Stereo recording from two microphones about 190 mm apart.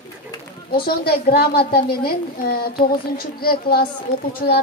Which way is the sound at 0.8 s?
55° left (ahead or behind).